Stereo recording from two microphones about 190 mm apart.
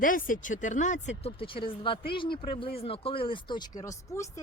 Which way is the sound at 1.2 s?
30° left (ahead or behind).